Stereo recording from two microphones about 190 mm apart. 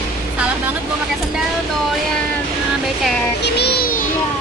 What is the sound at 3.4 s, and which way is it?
Music, 60° left (ahead or behind).